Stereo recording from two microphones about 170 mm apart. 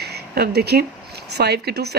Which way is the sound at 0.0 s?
70° right (ahead or behind).